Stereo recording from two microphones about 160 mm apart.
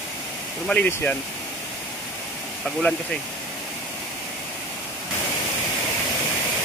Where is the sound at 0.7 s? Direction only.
10° left (ahead or behind).